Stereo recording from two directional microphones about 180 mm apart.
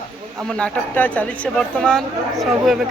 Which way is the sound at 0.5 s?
10° left (ahead or behind).